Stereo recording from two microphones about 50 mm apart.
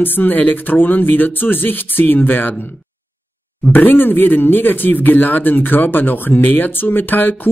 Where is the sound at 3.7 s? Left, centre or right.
Left.